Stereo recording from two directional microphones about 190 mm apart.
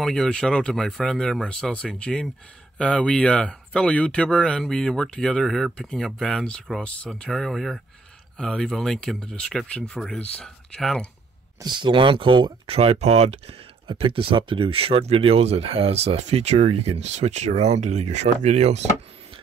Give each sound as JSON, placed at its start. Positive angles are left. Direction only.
{"t": 0.0, "sound": "speech", "side_deg": 5}
{"t": 11.6, "sound": "speech", "side_deg": -25}